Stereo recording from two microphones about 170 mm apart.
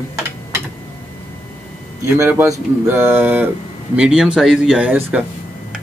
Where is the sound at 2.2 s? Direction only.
15° right (ahead or behind).